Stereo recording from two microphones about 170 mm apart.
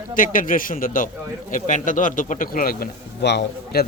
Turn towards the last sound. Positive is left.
turn(degrees=85)